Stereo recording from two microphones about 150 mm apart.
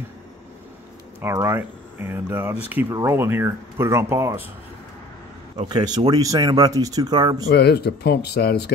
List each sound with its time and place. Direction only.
1.2 s speech: 15° right (ahead or behind)
5.6 s speech: 30° right (ahead or behind)
7.4 s speech: 90° left